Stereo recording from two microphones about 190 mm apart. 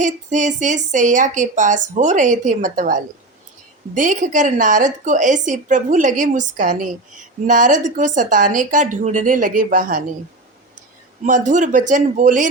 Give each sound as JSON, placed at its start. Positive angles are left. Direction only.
{"t": 0.0, "sound": "a woman's voice", "side_deg": -40}
{"t": 11.2, "sound": "a woman's voice", "side_deg": -40}